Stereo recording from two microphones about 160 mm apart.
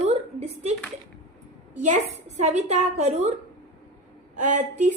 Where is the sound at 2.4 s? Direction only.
45° right (ahead or behind).